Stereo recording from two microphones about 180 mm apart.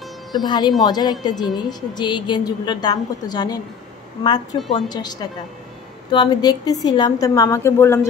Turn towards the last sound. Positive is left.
turn(degrees=15)  # may be behind; listen again after turning